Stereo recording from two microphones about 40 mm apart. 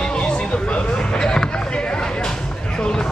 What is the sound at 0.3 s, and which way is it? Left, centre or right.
Basketball bounce, left.